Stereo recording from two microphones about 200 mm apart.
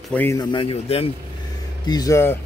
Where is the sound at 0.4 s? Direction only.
25° left (ahead or behind).